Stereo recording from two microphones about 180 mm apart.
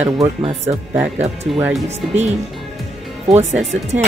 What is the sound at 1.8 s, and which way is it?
Speech, 40° right (ahead or behind).